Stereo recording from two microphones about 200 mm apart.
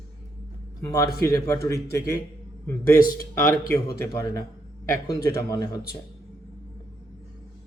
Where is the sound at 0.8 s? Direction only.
15° left (ahead or behind).